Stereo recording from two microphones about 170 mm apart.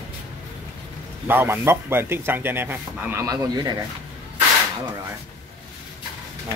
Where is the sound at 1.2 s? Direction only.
15° right (ahead or behind).